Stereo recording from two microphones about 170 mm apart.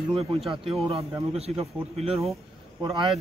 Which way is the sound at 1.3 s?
35° right (ahead or behind).